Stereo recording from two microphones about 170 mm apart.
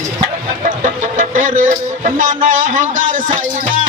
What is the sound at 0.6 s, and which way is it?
Speech, 50° right (ahead or behind).